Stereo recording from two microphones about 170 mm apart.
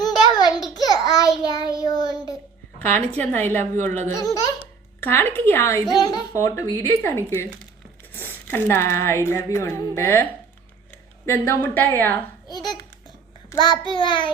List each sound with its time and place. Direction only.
0.0 s a sound: 25° left (ahead or behind)
2.7 s speech: 10° left (ahead or behind)
3.8 s speech: 45° right (ahead or behind)
4.1 s speech: 20° left (ahead or behind)
5.9 s speech: 25° left (ahead or behind)
11.3 s speech: 10° left (ahead or behind)
12.5 s babbling: 25° left (ahead or behind)
13.5 s speech: 25° left (ahead or behind)